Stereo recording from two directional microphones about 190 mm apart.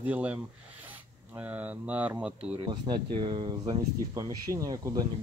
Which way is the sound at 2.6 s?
25° right (ahead or behind).